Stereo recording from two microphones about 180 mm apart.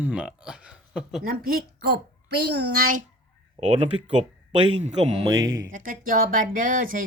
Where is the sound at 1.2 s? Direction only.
55° right (ahead or behind).